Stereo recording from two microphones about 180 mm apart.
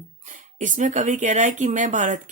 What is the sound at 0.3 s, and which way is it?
Speech, 45° right (ahead or behind).